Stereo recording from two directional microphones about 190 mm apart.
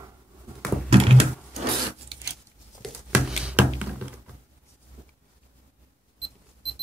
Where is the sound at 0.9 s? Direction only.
30° right (ahead or behind).